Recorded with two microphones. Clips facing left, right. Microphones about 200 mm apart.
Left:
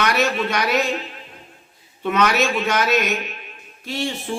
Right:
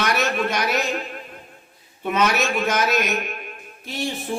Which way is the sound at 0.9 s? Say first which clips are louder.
Right 2 dB; 50° right (ahead or behind).